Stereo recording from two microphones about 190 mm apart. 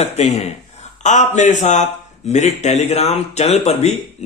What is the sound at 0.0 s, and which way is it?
Speech, 35° left (ahead or behind).